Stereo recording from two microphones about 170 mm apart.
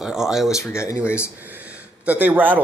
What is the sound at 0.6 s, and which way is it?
Speech, 15° left (ahead or behind).